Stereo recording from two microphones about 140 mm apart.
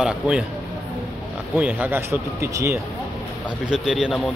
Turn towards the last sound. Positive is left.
turn(degrees=0)  # may be behind; listen again after turning